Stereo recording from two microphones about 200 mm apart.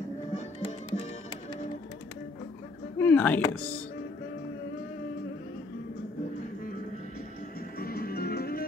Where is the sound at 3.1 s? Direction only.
10° left (ahead or behind).